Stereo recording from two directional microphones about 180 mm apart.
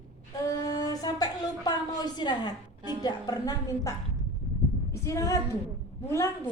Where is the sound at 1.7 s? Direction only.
25° left (ahead or behind).